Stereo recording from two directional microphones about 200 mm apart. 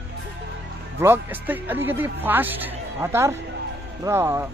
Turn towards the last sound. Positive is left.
turn(degrees=-15)  # may be behind; listen again after turning